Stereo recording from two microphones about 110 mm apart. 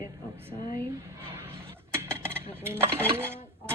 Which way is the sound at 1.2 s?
20° right (ahead or behind).